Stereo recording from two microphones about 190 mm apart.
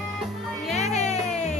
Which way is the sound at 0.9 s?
35° left (ahead or behind).